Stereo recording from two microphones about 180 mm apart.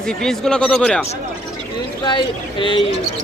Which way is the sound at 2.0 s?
25° left (ahead or behind).